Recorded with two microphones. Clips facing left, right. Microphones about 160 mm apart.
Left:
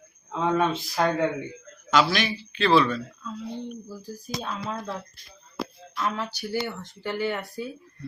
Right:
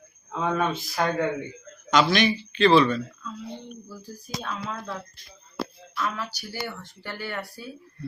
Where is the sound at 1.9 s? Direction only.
Centre (ahead or behind).